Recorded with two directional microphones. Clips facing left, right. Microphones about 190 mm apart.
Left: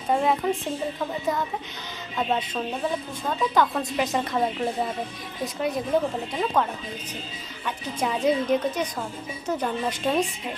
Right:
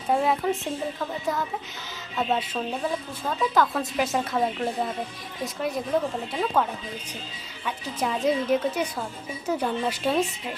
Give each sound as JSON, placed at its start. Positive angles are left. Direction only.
{"t": 0.1, "sound": "a woman's voice", "side_deg": 0}